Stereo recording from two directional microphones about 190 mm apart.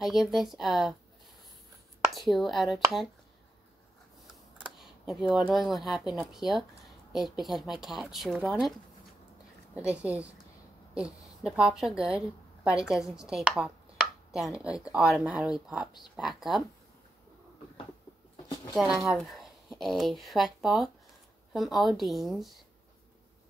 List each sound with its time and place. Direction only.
0.0 s speech: centre (ahead or behind)
2.0 s speech: centre (ahead or behind)
4.6 s computer keyboard: centre (ahead or behind)
5.5 s speech: centre (ahead or behind)
9.8 s a woman's voice: 5° right (ahead or behind)
18.3 s a sound: 20° left (ahead or behind)
18.8 s a woman's voice: centre (ahead or behind)